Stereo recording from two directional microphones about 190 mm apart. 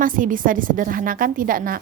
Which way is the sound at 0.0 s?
45° right (ahead or behind).